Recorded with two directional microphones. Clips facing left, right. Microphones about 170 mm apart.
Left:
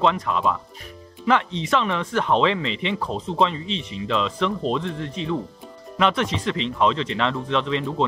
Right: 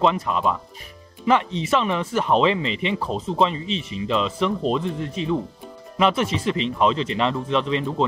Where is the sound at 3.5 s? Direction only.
35° left (ahead or behind).